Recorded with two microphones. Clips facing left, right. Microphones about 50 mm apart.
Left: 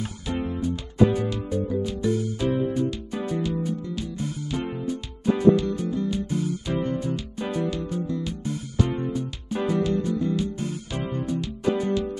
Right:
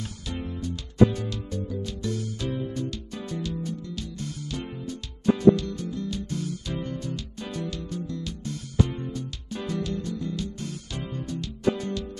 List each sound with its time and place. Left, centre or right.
0.3 s music: centre